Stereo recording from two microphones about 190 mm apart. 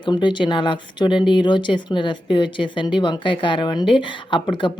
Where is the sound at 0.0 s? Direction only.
25° left (ahead or behind).